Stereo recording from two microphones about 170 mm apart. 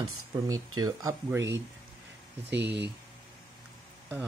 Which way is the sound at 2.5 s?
90° right.